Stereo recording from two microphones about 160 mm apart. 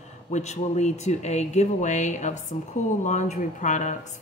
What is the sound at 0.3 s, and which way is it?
Speech, 45° left (ahead or behind).